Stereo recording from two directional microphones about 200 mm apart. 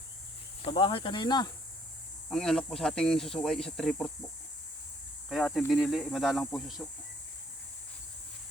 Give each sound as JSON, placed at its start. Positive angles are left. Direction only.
{"t": 0.6, "sound": "speech", "side_deg": 25}
{"t": 2.3, "sound": "speech", "side_deg": 5}
{"t": 5.3, "sound": "speech", "side_deg": 5}